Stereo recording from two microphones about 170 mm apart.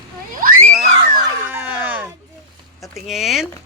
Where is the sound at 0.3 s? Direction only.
55° right (ahead or behind).